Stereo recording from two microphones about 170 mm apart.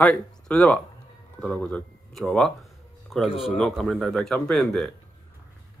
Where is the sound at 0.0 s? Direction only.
5° left (ahead or behind).